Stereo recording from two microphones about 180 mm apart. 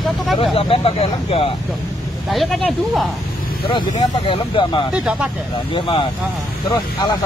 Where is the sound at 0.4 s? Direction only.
30° left (ahead or behind).